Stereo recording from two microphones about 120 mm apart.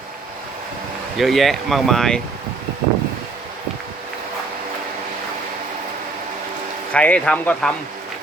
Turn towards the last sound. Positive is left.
turn(degrees=10)  # may be behind; listen again after turning